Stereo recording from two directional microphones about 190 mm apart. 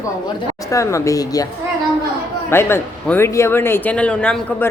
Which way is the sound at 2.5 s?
10° left (ahead or behind).